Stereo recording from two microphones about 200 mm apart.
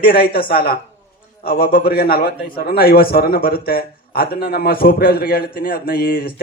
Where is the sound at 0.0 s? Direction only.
50° left (ahead or behind).